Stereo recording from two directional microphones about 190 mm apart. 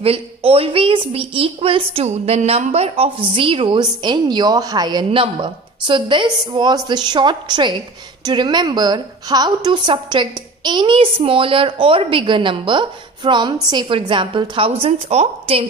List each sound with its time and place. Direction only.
0.0 s a woman's voice: 30° right (ahead or behind)